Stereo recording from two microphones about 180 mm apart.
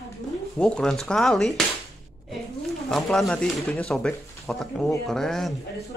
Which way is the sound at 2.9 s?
Centre (ahead or behind).